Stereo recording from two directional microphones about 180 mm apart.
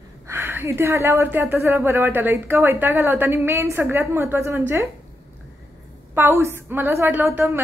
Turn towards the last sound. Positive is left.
turn(degrees=-15)  # may be behind; listen again after turning